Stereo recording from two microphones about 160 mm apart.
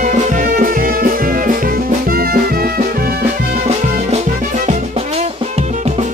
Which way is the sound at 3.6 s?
45° right (ahead or behind).